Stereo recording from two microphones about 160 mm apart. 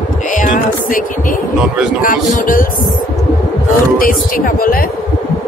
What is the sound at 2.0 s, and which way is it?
Speech, 55° left (ahead or behind).